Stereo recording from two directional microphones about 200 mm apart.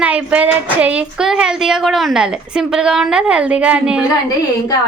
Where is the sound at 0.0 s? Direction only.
5° right (ahead or behind).